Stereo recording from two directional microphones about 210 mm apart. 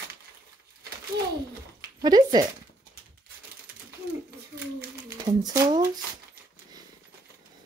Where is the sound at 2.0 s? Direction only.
20° right (ahead or behind).